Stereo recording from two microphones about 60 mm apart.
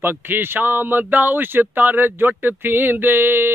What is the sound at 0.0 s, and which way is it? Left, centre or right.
Mantra, right.